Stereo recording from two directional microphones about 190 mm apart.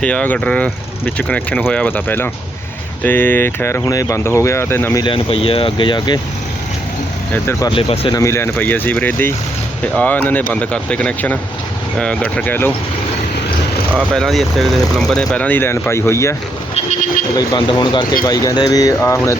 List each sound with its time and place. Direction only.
0.0 s speech: 5° left (ahead or behind)
5.0 s speech: 30° left (ahead or behind)
7.7 s speech: 25° left (ahead or behind)
8.2 s speech: 15° left (ahead or behind)
14.1 s speech: centre (ahead or behind)
16.7 s vehicle: 35° left (ahead or behind)
17.3 s speech: 25° left (ahead or behind)